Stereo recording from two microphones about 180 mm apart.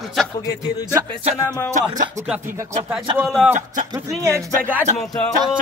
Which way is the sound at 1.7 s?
45° right (ahead or behind).